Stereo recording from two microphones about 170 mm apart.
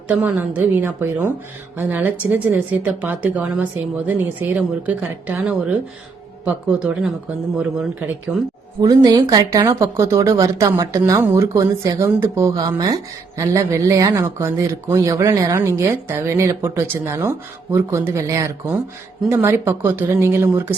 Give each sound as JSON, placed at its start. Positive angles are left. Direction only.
{"t": 0.1, "sound": "speech", "side_deg": -10}
{"t": 8.8, "sound": "speech", "side_deg": -20}